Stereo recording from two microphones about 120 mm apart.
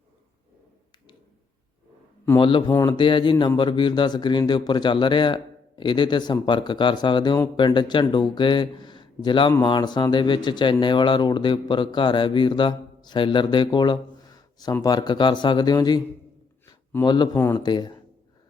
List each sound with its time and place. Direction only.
2.4 s speech: 40° left (ahead or behind)
17.0 s speech: 35° left (ahead or behind)
17.3 s speech: 20° left (ahead or behind)
17.6 s speech: 35° left (ahead or behind)